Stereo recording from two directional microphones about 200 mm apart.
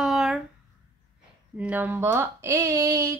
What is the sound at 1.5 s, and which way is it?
Speech, 10° right (ahead or behind).